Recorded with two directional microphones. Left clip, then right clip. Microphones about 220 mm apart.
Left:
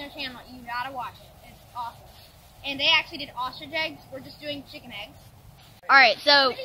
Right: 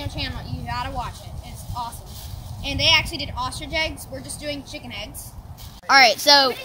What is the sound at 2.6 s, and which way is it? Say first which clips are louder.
Speech: right 4 dB; 15° right (ahead or behind).